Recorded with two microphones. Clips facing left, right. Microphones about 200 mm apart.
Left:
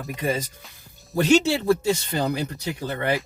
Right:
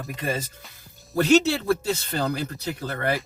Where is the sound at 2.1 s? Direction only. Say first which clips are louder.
Left 2 dB; 15° left (ahead or behind).